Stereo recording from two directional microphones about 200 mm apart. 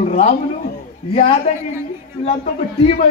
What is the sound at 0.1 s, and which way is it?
A man's voice, 40° left (ahead or behind).